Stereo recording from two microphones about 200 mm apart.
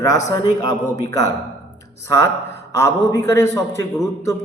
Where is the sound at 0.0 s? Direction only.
15° left (ahead or behind).